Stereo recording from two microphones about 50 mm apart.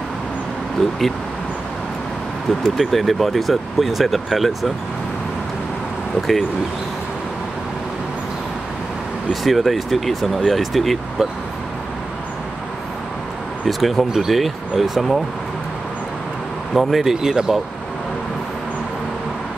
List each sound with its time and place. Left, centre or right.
0.7 s speech: centre
2.6 s speech: centre
9.3 s speech: centre
13.7 s speech: centre
16.7 s speech: centre